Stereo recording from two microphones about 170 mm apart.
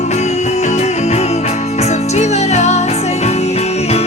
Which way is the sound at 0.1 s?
40° left (ahead or behind).